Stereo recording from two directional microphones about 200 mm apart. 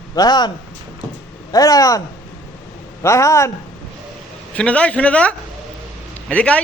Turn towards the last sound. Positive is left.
turn(degrees=5)  # may be behind; listen again after turning